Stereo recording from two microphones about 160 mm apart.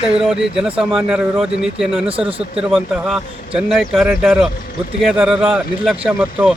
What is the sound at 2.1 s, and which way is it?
Speech, 35° right (ahead or behind).